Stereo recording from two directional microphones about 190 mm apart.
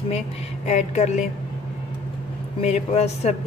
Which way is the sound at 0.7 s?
35° left (ahead or behind).